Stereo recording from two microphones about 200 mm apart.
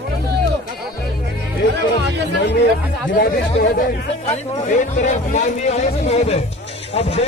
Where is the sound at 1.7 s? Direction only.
60° right (ahead or behind).